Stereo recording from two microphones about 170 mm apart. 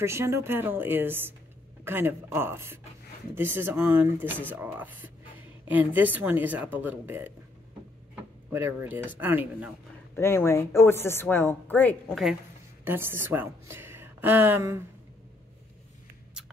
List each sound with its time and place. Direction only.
0.0 s speech: 15° right (ahead or behind)
8.5 s speech: 15° right (ahead or behind)
10.1 s a woman's voice: 15° left (ahead or behind)
12.8 s speech: 15° right (ahead or behind)